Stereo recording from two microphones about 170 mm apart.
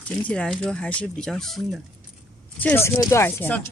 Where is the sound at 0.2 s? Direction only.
5° left (ahead or behind).